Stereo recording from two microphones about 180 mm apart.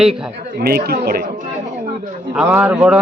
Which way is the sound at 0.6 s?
60° right (ahead or behind).